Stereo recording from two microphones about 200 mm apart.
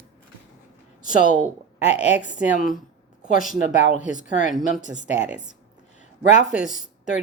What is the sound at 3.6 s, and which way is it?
Speech, 40° left (ahead or behind).